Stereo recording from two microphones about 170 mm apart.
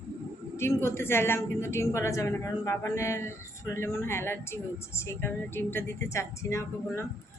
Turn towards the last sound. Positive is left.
turn(degrees=15)  # may be behind; listen again after turning